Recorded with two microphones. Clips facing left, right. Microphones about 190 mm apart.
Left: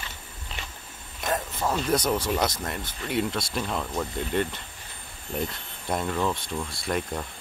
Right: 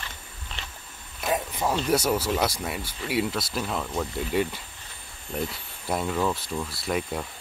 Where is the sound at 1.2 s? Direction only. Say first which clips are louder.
Right 1 dB; 10° right (ahead or behind).